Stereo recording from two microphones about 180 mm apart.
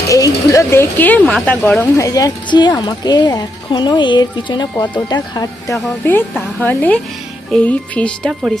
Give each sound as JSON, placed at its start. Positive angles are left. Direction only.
{"t": 0.1, "sound": "a woman's voice", "side_deg": 20}